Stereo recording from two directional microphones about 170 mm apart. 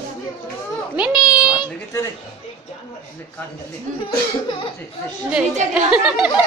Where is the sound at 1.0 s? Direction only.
5° right (ahead or behind).